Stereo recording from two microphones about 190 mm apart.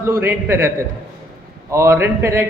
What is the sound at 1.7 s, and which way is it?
Speech, 15° right (ahead or behind).